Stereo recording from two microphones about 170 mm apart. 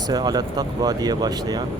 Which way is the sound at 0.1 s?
25° right (ahead or behind).